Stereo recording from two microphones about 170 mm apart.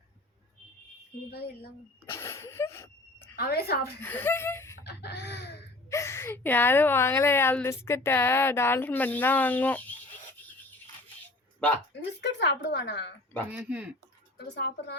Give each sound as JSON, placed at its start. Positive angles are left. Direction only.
{"t": 1.3, "sound": "speech", "side_deg": 65}
{"t": 2.0, "sound": "sneeze", "side_deg": 15}
{"t": 3.3, "sound": "a woman's voice", "side_deg": 65}
{"t": 4.0, "sound": "speech", "side_deg": 10}
{"t": 4.8, "sound": "chicken", "side_deg": 75}
{"t": 5.9, "sound": "a woman's voice", "side_deg": 15}
{"t": 11.9, "sound": "speech", "side_deg": 90}
{"t": 13.5, "sound": "speech", "side_deg": -10}
{"t": 14.3, "sound": "speech", "side_deg": 80}